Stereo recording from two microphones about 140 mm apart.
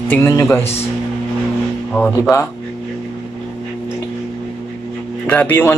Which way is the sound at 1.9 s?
15° left (ahead or behind).